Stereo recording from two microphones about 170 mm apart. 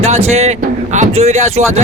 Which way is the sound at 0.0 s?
40° right (ahead or behind).